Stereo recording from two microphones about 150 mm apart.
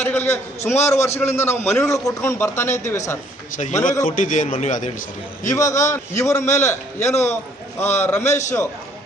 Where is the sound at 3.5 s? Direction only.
55° left (ahead or behind).